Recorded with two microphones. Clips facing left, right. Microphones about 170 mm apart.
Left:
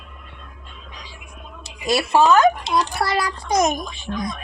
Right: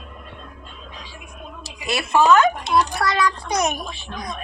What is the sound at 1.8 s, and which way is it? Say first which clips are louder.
A child's voice: left 1 dB; 35° left (ahead or behind).